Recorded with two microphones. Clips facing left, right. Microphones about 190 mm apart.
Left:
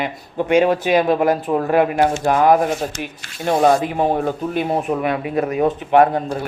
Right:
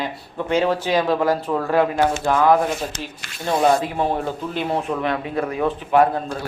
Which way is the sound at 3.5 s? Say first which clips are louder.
Left 3 dB; 20° left (ahead or behind).